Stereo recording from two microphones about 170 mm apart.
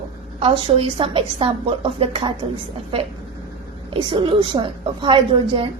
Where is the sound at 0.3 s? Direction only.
35° right (ahead or behind).